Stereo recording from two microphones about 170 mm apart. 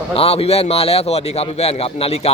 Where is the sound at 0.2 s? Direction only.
35° left (ahead or behind).